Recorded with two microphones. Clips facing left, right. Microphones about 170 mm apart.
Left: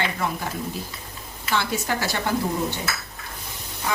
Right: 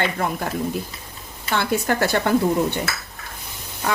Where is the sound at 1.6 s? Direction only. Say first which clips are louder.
Right 6 dB; 55° right (ahead or behind).